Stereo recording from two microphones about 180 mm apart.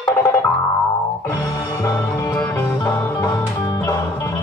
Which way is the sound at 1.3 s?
15° left (ahead or behind).